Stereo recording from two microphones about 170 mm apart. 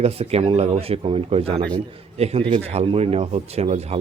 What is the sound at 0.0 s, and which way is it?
A man's voice, 35° right (ahead or behind).